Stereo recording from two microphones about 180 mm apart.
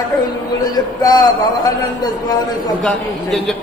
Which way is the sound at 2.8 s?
Centre (ahead or behind).